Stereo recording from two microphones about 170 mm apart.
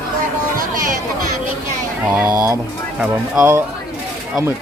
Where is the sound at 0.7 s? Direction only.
55° right (ahead or behind).